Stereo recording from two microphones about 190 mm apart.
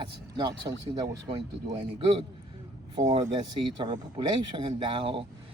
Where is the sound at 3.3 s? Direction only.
25° right (ahead or behind).